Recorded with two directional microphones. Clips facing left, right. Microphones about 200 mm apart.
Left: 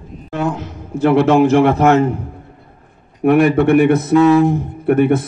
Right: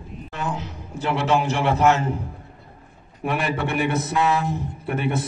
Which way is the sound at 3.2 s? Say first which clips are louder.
Left 13 dB; 55° left (ahead or behind).